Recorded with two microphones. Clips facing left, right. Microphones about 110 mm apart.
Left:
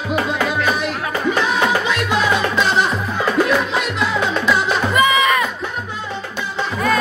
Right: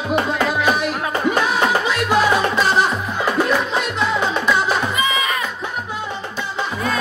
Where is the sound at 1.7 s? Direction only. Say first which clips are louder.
Right 1 dB; 10° right (ahead or behind).